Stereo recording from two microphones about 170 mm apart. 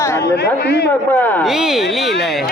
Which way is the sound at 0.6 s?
75° left (ahead or behind).